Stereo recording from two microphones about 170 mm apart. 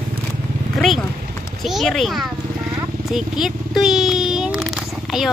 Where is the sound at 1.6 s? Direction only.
Centre (ahead or behind).